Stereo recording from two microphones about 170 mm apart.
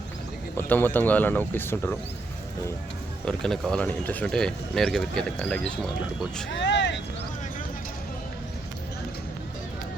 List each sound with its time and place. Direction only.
0.5 s speech: 10° left (ahead or behind)
3.2 s speech: centre (ahead or behind)
6.5 s vehicle: 90° left